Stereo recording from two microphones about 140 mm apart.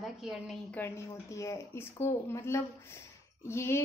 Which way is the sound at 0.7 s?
15° left (ahead or behind).